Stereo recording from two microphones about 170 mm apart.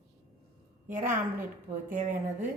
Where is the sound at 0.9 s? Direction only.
50° right (ahead or behind).